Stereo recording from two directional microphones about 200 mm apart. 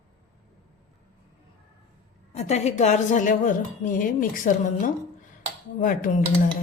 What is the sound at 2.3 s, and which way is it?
A woman's voice, 35° left (ahead or behind).